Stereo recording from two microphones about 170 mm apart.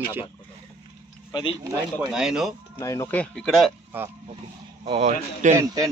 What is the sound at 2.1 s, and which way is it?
Speech, 5° right (ahead or behind).